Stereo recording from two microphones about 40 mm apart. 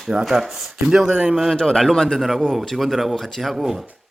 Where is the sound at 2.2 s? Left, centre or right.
Centre.